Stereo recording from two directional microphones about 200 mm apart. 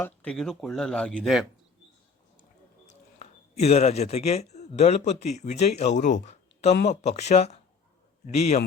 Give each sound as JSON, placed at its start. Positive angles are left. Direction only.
{"t": 0.0, "sound": "speech", "side_deg": 5}
{"t": 2.8, "sound": "a sound", "side_deg": 30}
{"t": 4.5, "sound": "speech", "side_deg": 30}